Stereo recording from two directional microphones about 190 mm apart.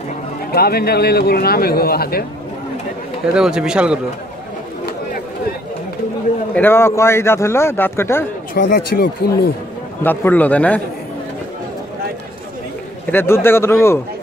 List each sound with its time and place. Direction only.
0.5 s a man's voice: 55° left (ahead or behind)
3.3 s a man's voice: 5° right (ahead or behind)
6.5 s a man's voice: 10° left (ahead or behind)
8.5 s speech: 45° left (ahead or behind)
10.0 s a man's voice: 10° left (ahead or behind)
13.1 s a man's voice: 10° left (ahead or behind)